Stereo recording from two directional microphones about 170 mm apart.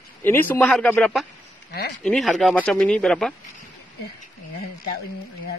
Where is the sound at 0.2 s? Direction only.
10° left (ahead or behind).